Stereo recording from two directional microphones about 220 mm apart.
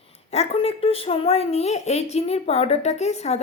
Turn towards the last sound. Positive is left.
turn(degrees=30)  # may be behind; listen again after turning